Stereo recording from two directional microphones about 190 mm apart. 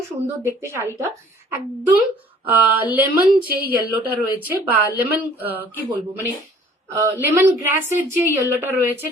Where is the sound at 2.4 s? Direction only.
10° right (ahead or behind).